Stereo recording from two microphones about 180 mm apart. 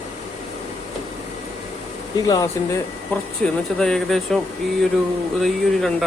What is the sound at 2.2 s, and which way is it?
Speech, 20° left (ahead or behind).